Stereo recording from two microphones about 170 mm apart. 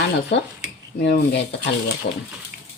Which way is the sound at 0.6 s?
80° left.